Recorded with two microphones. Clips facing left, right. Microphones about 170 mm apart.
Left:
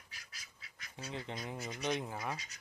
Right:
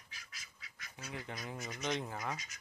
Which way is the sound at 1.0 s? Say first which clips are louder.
Left 2 dB; 25° left (ahead or behind).